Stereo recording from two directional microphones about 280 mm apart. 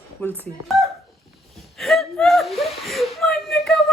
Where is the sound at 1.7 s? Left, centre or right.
Centre.